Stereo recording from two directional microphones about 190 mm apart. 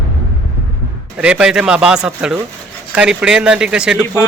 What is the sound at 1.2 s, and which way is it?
Speech, 5° right (ahead or behind).